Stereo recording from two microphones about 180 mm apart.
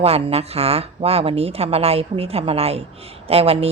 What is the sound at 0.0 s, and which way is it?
Speech, 35° right (ahead or behind).